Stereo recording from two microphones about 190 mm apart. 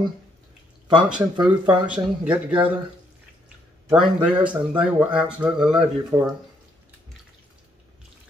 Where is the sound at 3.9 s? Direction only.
5° right (ahead or behind).